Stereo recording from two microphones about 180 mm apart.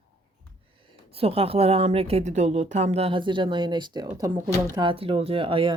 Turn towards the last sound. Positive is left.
turn(degrees=-30)  # may be behind; listen again after turning